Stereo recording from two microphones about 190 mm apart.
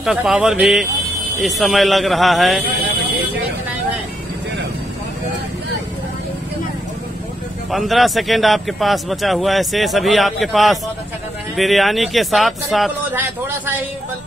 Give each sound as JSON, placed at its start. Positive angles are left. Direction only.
{"t": 0.0, "sound": "a man's voice", "side_deg": -5}
{"t": 7.7, "sound": "a man's voice", "side_deg": 0}